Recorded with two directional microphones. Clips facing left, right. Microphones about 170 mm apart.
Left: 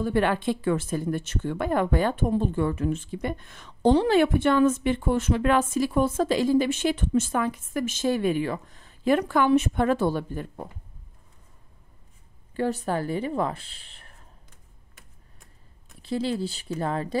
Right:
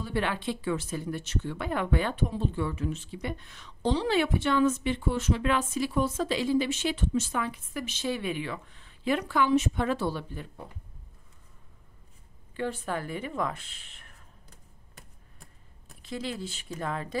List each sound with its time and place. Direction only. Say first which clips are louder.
0.0 s speech: left 7 dB; 50° left (ahead or behind)
12.5 s speech: left 6 dB; 40° left (ahead or behind)
14.5 s computer keyboard: right 3 dB; 35° right (ahead or behind)
16.0 s speech: left 8 dB; 30° left (ahead or behind)